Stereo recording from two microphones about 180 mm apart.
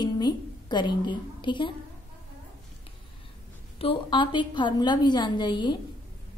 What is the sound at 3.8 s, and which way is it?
A woman's voice, 30° left (ahead or behind).